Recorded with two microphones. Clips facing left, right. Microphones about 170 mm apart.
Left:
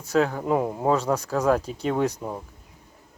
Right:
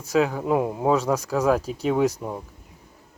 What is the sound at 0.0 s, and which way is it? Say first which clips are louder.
Speech: right 1 dB; 5° right (ahead or behind).